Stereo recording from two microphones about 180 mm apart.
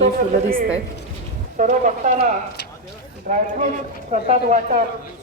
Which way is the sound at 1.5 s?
45° right (ahead or behind).